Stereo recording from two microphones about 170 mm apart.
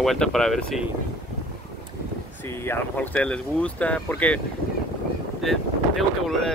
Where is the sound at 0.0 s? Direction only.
Centre (ahead or behind).